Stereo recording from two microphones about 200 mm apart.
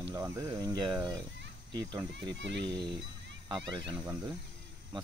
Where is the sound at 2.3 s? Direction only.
65° right (ahead or behind).